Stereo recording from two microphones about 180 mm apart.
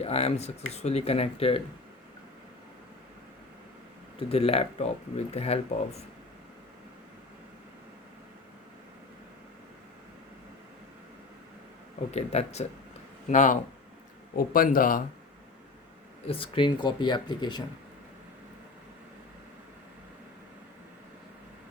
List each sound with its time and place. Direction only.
0.0 s speech: 35° left (ahead or behind)
4.3 s speech: 35° left (ahead or behind)
12.1 s a man's voice: 35° left (ahead or behind)
16.2 s speech: 30° left (ahead or behind)